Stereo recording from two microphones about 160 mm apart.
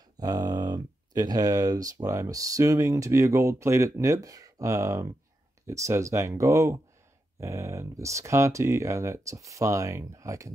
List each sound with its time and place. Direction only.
0.2 s speech: 25° right (ahead or behind)